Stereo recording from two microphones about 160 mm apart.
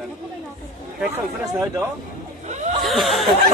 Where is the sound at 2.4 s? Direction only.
50° right (ahead or behind).